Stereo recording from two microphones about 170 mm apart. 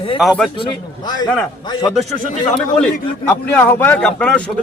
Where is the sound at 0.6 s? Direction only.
25° left (ahead or behind).